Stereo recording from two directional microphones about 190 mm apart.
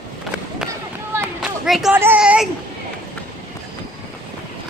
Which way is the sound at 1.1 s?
15° right (ahead or behind).